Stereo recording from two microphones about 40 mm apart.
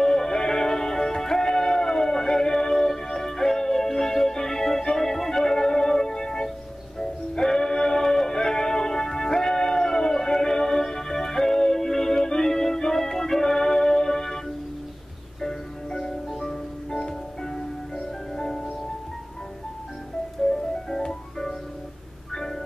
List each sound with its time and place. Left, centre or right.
0.0 s music: centre
15.4 s music: centre
20.4 s music: centre